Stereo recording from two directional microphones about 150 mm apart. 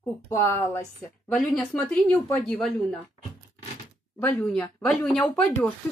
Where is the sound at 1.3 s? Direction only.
5° left (ahead or behind).